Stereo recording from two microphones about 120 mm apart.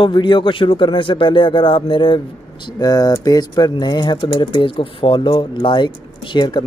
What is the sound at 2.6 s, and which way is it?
Speech, 30° left (ahead or behind).